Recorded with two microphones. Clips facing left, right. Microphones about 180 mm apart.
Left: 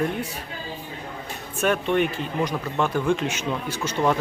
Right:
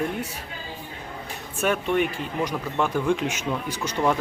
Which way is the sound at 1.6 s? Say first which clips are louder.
Left 1 dB; 10° right (ahead or behind).